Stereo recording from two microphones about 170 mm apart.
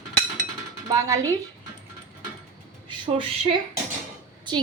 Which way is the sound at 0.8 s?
20° right (ahead or behind).